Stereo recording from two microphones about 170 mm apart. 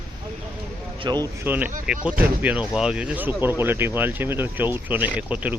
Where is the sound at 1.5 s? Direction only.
10° right (ahead or behind).